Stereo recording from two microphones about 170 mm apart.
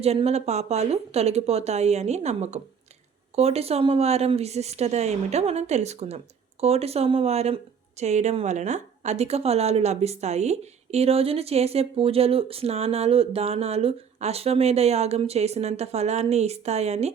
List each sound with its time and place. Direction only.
0.0 s a woman's voice: 35° right (ahead or behind)